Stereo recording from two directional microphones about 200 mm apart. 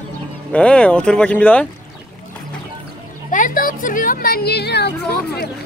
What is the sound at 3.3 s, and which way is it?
Speech, 40° left (ahead or behind).